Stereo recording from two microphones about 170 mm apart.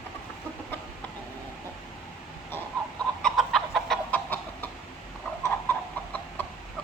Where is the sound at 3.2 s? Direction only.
5° left (ahead or behind).